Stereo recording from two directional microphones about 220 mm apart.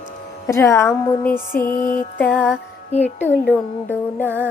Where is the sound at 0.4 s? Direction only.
10° left (ahead or behind).